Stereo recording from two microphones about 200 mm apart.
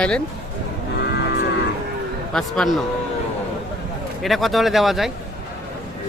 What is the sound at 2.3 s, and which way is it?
Speech, centre (ahead or behind).